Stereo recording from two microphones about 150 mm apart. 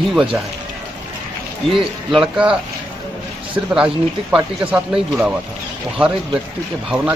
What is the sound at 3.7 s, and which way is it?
Speech, 5° right (ahead or behind).